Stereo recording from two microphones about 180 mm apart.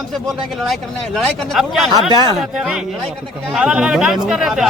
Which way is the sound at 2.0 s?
25° right (ahead or behind).